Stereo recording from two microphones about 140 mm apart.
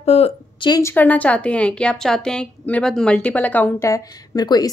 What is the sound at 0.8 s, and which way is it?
A woman's voice, 15° left (ahead or behind).